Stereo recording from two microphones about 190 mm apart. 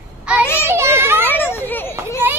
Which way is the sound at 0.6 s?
15° right (ahead or behind).